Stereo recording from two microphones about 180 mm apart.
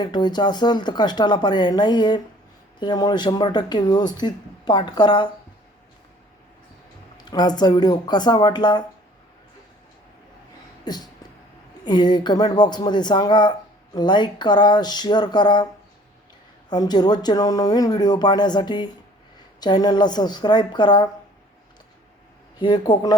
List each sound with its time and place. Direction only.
0.0 s speech: 25° left (ahead or behind)
7.2 s speech: 20° left (ahead or behind)
10.8 s a sound: 20° left (ahead or behind)
11.9 s speech: 25° left (ahead or behind)
16.6 s speech: 25° left (ahead or behind)
22.5 s speech: 25° left (ahead or behind)